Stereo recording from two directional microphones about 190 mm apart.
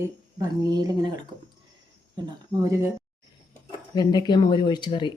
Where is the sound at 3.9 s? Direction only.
25° left (ahead or behind).